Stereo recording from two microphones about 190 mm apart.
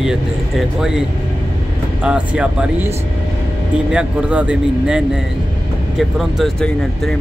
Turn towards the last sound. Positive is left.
turn(degrees=0)  # may be behind; listen again after turning